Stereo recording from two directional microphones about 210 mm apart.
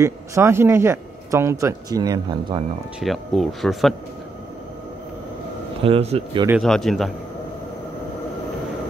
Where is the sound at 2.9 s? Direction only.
Centre (ahead or behind).